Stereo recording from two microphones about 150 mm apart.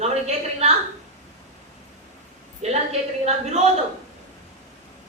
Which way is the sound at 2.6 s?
50° right (ahead or behind).